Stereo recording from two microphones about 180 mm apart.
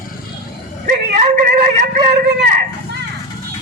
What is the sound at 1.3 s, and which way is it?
Speech, 50° right (ahead or behind).